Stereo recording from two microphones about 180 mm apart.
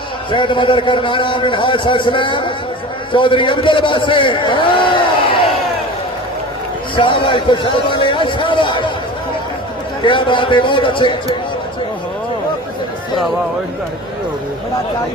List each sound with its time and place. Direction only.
0.3 s a man's voice: 25° left (ahead or behind)
6.9 s a sound: 30° left (ahead or behind)
10.0 s a man's voice: 25° left (ahead or behind)